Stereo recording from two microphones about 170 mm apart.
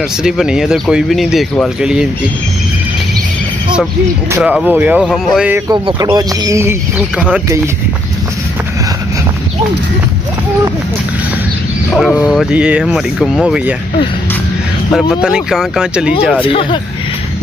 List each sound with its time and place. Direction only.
0.2 s speech: 5° right (ahead or behind)
4.4 s speech: 5° right (ahead or behind)
5.7 s speech: 20° right (ahead or behind)
11.9 s speech: centre (ahead or behind)
14.9 s speech: 5° right (ahead or behind)
16.4 s speech: 30° left (ahead or behind)